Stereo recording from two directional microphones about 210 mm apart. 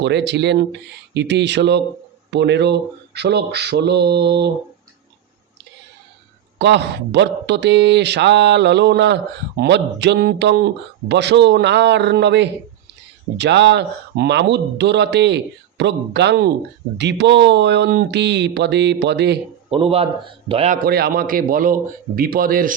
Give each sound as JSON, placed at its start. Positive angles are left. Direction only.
{"t": 0.0, "sound": "mantra", "side_deg": -55}
{"t": 6.6, "sound": "speech", "side_deg": -55}
{"t": 19.7, "sound": "speech", "side_deg": -30}
{"t": 20.8, "sound": "mantra", "side_deg": -45}